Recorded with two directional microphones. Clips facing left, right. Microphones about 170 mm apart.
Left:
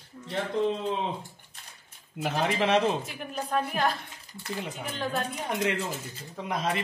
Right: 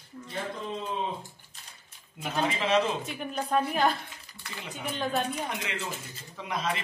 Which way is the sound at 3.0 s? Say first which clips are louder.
Right 2 dB; centre (ahead or behind).